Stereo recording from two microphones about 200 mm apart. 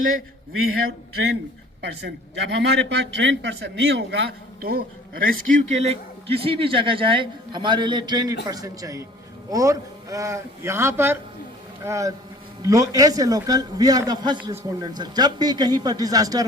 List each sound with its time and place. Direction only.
1.8 s a man's voice: 60° right (ahead or behind); by 16.5 s 20° right (ahead or behind)